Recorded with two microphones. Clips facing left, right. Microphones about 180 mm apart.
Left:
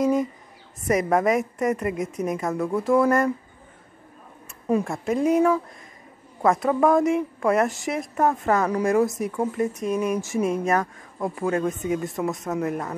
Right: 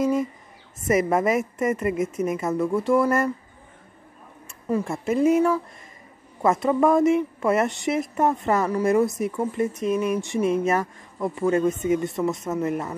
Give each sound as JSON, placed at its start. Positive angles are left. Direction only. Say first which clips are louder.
{"t": 0.0, "sound": "a woman's voice", "louder": "left 1 dB", "side_deg": 0}
{"t": 4.8, "sound": "a woman's voice", "louder": "right 2 dB", "side_deg": 0}